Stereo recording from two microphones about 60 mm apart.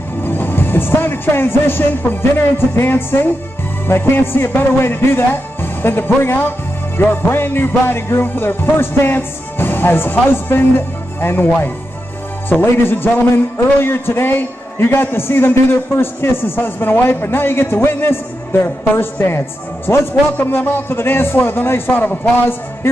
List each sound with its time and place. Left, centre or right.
0.2 s a man's voice: left
12.4 s a man's voice: left